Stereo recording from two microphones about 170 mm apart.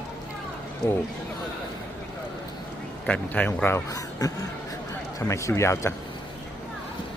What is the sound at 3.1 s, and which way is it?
Speech, 10° left (ahead or behind).